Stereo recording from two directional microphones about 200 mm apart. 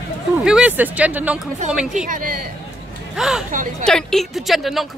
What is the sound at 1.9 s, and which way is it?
Speech, 40° right (ahead or behind).